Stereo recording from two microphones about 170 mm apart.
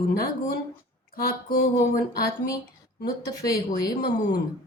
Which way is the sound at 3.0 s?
20° left (ahead or behind).